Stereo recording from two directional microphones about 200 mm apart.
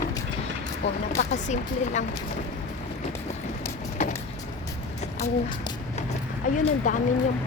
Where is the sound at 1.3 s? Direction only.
35° left (ahead or behind).